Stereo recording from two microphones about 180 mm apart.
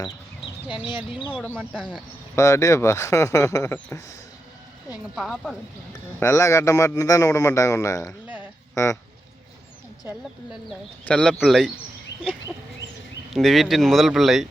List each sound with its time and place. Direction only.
0.7 s speech: 25° left (ahead or behind)
1.5 s speech: 5° right (ahead or behind)
2.3 s a man's voice: 15° left (ahead or behind)
5.1 s speech: centre (ahead or behind)
6.1 s a man's voice: 15° left (ahead or behind)
11.0 s speech: 5° left (ahead or behind)
13.3 s speech: centre (ahead or behind)